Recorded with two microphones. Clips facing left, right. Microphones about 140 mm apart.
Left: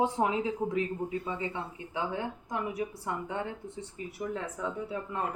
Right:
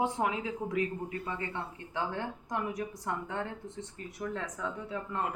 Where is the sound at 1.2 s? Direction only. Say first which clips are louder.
Left 2 dB; 10° left (ahead or behind).